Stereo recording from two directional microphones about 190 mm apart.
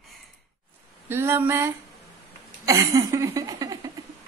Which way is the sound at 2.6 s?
15° right (ahead or behind).